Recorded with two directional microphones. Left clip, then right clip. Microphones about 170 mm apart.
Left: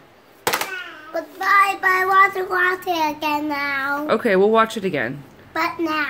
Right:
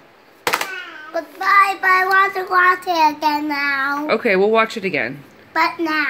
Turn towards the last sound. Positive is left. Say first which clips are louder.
# right 4 dB
turn(degrees=0)  # may be behind; listen again after turning